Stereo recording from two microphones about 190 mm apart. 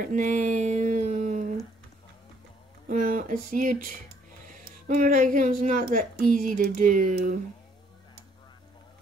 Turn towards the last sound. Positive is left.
turn(degrees=-45)  # may be behind; listen again after turning